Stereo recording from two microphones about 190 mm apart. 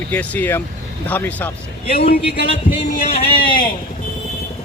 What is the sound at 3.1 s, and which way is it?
Speech, 25° left (ahead or behind).